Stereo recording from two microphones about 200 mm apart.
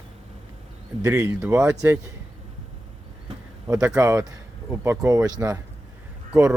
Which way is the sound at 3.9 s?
15° right (ahead or behind).